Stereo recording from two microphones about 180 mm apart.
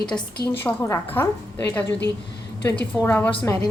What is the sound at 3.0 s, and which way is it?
Speech, 10° left (ahead or behind).